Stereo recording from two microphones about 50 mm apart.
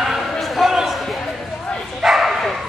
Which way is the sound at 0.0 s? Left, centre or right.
Centre.